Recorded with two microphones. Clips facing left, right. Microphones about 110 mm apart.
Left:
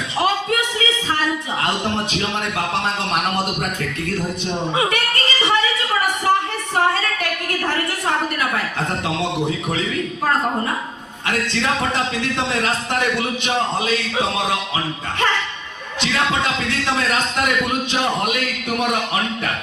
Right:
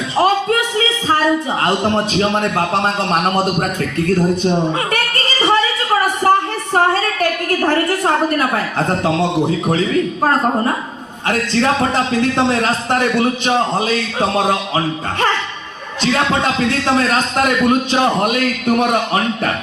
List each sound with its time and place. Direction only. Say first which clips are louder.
0.2 s a sound: right 5 dB; 35° right (ahead or behind)
1.6 s a man's voice: right 5 dB; 40° right (ahead or behind)
4.9 s a sound: right 2 dB; 35° right (ahead or behind)
6.7 s a woman's voice: right 4 dB; 40° right (ahead or behind)
11.3 s a man's voice: right 5 dB; 40° right (ahead or behind)
16.1 s a man's voice: right 3 dB; 35° right (ahead or behind)